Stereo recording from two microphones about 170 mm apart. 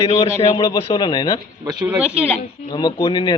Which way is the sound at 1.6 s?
25° right (ahead or behind).